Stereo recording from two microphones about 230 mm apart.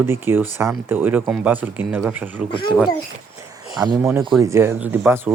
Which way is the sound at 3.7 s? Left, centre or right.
Centre.